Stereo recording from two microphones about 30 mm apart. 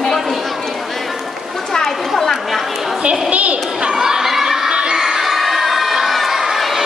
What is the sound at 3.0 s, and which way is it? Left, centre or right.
Speech, right.